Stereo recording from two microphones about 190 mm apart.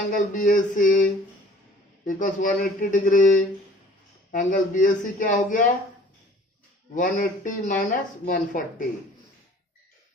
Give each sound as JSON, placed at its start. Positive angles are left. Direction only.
{"t": 0.1, "sound": "speech", "side_deg": 45}
{"t": 2.0, "sound": "speech", "side_deg": 40}
{"t": 6.9, "sound": "speech", "side_deg": 45}